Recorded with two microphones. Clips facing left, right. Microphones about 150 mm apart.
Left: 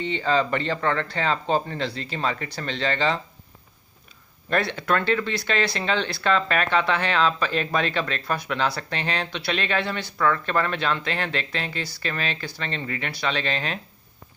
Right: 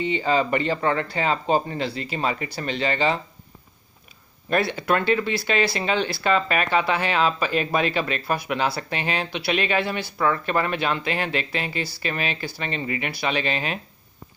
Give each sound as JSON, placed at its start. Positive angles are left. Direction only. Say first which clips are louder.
{"t": 0.0, "sound": "speech", "louder": "right 1 dB", "side_deg": -10}
{"t": 4.5, "sound": "speech", "louder": "right 2 dB", "side_deg": -10}